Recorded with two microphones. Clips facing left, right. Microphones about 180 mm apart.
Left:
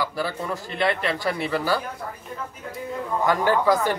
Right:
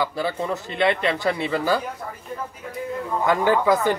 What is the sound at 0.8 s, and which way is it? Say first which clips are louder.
Speech: right 3 dB; 20° right (ahead or behind).